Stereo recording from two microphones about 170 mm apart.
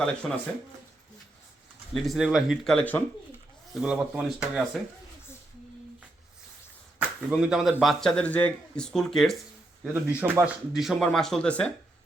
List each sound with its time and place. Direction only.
0.0 s speech: 5° left (ahead or behind)
1.9 s speech: centre (ahead or behind)
3.8 s speech: 5° right (ahead or behind)
7.3 s speech: 5° right (ahead or behind)